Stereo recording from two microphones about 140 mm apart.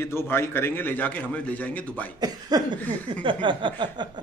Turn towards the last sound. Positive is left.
turn(degrees=-35)  # may be behind; listen again after turning